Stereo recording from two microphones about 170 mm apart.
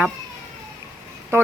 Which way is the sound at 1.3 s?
15° right (ahead or behind).